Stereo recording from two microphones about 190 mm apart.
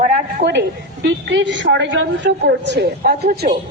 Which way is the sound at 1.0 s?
70° right (ahead or behind).